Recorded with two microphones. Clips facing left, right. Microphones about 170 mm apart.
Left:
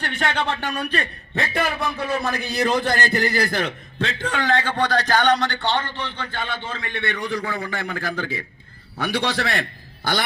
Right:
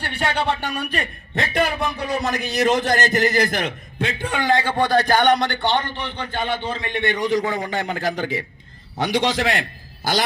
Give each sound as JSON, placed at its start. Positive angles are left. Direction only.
{"t": 0.0, "sound": "a man's voice", "side_deg": -10}